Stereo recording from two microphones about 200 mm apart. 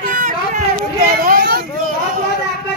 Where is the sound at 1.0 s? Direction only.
45° right (ahead or behind).